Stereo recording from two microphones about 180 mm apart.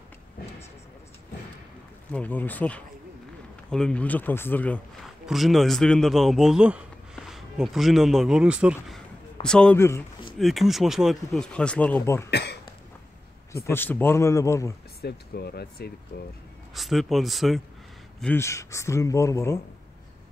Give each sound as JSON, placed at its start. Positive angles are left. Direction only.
{"t": 2.1, "sound": "a man's voice", "side_deg": 10}
{"t": 10.4, "sound": "speech", "side_deg": 0}
{"t": 12.3, "sound": "speech", "side_deg": 65}
{"t": 13.7, "sound": "speech", "side_deg": 10}
{"t": 15.0, "sound": "speech", "side_deg": 65}
{"t": 16.7, "sound": "speech", "side_deg": 0}
{"t": 18.2, "sound": "speech", "side_deg": 15}